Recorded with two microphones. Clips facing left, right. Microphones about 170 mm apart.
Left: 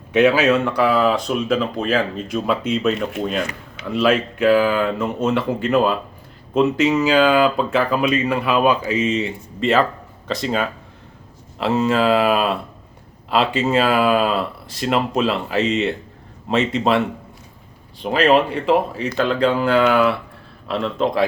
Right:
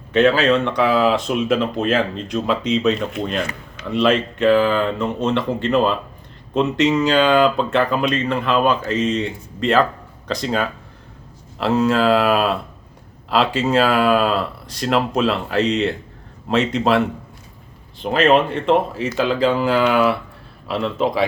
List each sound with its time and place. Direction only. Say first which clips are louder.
0.1 s speech: even; 10° left (ahead or behind)
18.0 s speech: even; centre (ahead or behind)